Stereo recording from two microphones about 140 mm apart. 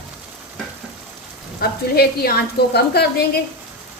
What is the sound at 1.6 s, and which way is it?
Speech, 90° left.